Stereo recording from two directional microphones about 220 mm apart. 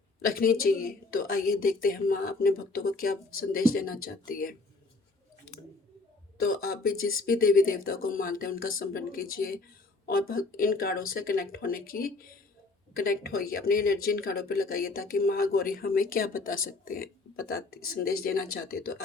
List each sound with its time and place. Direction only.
0.2 s speech: 40° left (ahead or behind)
6.3 s speech: 40° left (ahead or behind)